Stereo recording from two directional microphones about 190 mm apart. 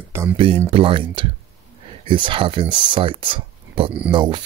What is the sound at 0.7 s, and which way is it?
Speech, 30° right (ahead or behind).